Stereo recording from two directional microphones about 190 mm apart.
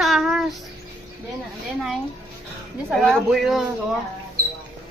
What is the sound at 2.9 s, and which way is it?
Speech, centre (ahead or behind).